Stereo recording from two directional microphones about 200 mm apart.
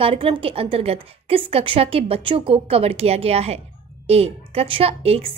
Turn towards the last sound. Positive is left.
turn(degrees=-30)  # may be behind; listen again after turning